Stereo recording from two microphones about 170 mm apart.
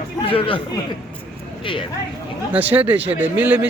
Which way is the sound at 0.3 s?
30° left (ahead or behind).